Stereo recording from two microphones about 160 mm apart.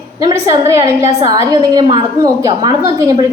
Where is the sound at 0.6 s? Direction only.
20° right (ahead or behind).